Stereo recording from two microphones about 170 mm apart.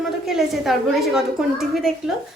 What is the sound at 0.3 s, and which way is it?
A woman's voice, centre (ahead or behind).